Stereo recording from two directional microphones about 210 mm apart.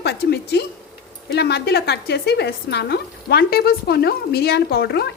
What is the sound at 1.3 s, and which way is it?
A woman's voice, 50° left (ahead or behind).